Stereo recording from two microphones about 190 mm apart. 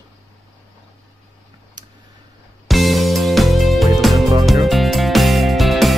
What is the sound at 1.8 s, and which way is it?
Tick-tock, 20° right (ahead or behind).